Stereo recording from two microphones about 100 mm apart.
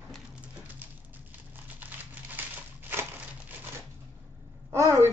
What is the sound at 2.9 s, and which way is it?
Crumpling, 20° right (ahead or behind).